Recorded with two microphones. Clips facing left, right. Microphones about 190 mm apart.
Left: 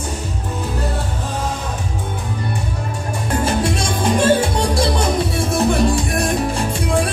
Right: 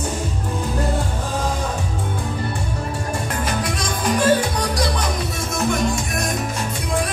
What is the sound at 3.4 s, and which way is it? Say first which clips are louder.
Music: left 5 dB; 25° left (ahead or behind).